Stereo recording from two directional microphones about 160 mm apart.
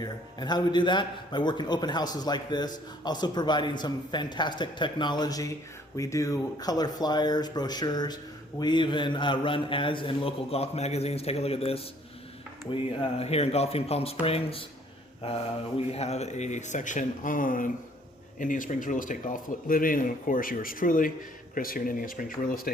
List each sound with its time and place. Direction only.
0.0 s a man's voice: 25° left (ahead or behind)
15.9 s speech: 40° left (ahead or behind); by 22.7 s 60° left (ahead or behind)